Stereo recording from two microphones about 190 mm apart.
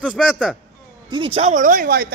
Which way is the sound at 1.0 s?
25° right (ahead or behind).